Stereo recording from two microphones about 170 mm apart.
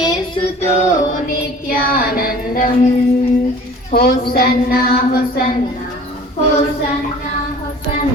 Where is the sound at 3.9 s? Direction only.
65° left (ahead or behind).